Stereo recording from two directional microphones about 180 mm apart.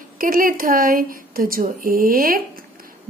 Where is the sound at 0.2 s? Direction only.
50° right (ahead or behind).